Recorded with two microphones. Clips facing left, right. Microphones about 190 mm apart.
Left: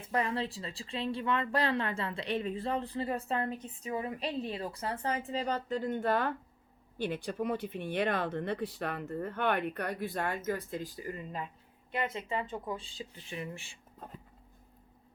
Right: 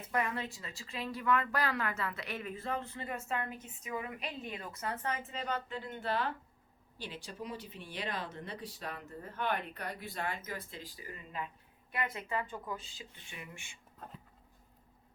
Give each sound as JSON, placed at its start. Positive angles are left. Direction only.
{"t": 0.1, "sound": "speech", "side_deg": 30}
{"t": 11.9, "sound": "speech", "side_deg": 25}